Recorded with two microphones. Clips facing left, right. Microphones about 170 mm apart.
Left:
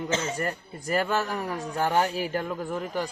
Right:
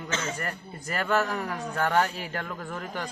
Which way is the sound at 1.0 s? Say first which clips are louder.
Right 1 dB; 15° left (ahead or behind).